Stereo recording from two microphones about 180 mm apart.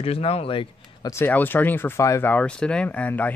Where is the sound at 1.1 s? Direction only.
10° left (ahead or behind).